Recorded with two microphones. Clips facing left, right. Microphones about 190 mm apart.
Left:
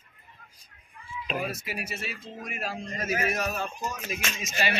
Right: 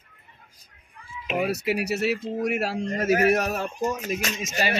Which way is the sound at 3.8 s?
45° right (ahead or behind).